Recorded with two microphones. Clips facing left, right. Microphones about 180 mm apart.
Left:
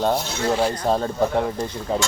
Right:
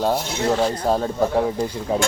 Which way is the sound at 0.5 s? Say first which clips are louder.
Even; 5° left (ahead or behind).